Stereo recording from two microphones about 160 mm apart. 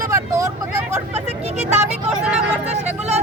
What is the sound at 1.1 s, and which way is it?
Vehicle, 45° right (ahead or behind).